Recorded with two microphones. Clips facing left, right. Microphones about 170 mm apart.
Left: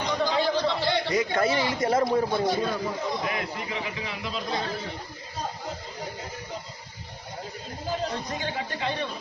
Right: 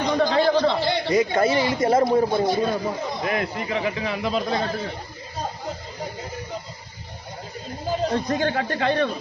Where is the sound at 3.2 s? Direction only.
60° right (ahead or behind).